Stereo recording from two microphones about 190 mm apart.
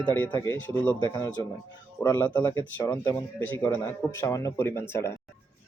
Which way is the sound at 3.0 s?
20° left (ahead or behind).